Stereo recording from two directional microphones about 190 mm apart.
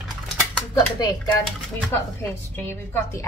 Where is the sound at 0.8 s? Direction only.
20° left (ahead or behind).